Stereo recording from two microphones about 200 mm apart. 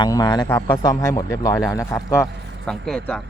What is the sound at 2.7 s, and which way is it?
Speech, 5° left (ahead or behind).